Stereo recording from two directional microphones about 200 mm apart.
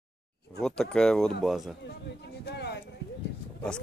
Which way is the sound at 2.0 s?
55° left (ahead or behind).